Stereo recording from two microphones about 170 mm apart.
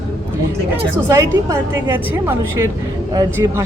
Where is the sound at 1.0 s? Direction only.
15° right (ahead or behind).